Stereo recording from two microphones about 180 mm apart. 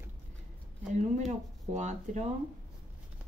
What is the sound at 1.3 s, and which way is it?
Speech, 40° right (ahead or behind).